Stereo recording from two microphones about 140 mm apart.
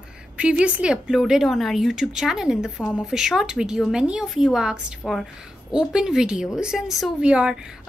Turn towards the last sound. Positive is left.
turn(degrees=-5)  # may be behind; listen again after turning